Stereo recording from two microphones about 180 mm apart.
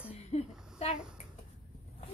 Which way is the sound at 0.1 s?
35° left (ahead or behind).